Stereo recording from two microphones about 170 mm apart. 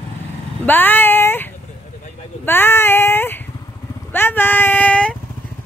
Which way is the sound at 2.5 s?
15° left (ahead or behind).